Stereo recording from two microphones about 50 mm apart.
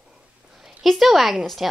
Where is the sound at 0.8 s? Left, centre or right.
Centre.